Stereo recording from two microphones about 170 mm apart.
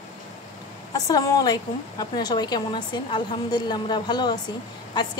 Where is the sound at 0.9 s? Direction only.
20° left (ahead or behind).